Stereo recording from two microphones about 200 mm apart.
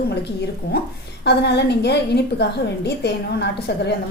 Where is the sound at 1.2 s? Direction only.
55° left (ahead or behind).